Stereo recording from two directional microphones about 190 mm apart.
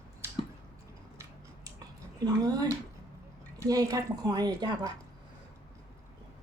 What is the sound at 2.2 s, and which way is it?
Speech, 20° right (ahead or behind).